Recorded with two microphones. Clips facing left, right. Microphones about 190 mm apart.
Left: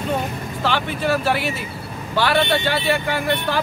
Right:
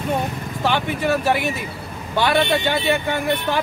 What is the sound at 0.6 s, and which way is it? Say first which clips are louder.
Speech: right 1 dB; 15° right (ahead or behind).